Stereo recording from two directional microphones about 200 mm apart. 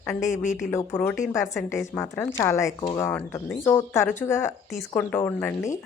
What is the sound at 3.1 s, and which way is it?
A woman's voice, 5° left (ahead or behind).